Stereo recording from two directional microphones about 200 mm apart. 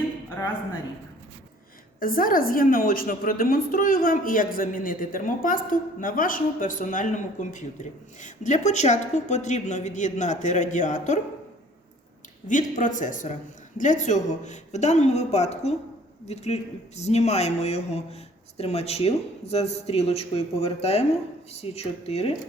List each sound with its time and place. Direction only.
2.0 s a woman's voice: 45° left (ahead or behind)
12.5 s speech: 40° left (ahead or behind)